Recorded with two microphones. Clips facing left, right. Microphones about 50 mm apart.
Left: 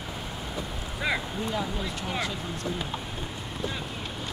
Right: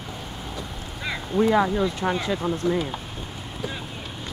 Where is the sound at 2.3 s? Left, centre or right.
Right.